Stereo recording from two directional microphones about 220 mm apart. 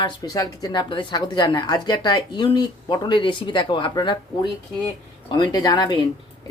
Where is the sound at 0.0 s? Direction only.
15° left (ahead or behind).